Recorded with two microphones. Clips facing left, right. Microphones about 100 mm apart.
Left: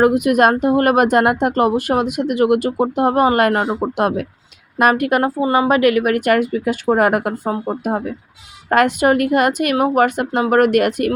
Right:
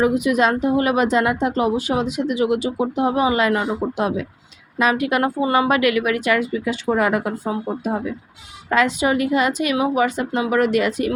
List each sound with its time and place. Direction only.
0.0 s a woman's voice: 55° left (ahead or behind)
5.2 s a woman's voice: 30° left (ahead or behind); by 11.1 s 60° left (ahead or behind)